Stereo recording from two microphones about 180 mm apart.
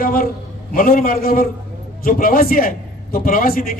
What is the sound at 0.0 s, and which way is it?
A man's voice, 55° left (ahead or behind).